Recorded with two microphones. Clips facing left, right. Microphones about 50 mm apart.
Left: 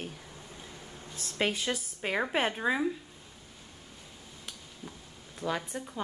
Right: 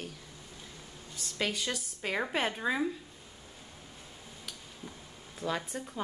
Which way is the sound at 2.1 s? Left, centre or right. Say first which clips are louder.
Left 2 dB; centre.